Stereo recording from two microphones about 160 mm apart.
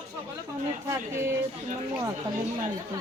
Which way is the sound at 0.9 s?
15° right (ahead or behind).